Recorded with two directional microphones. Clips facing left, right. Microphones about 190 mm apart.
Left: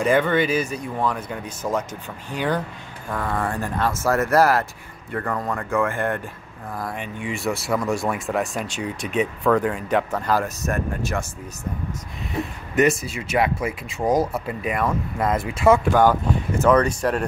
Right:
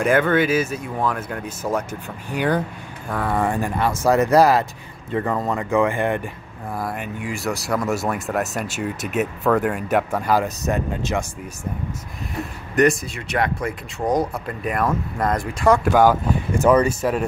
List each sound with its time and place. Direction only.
0.0 s speech: 5° right (ahead or behind)
12.7 s speech: 5° left (ahead or behind)